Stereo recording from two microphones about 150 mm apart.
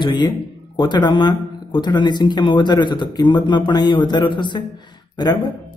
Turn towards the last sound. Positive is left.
turn(degrees=30)  # may be behind; listen again after turning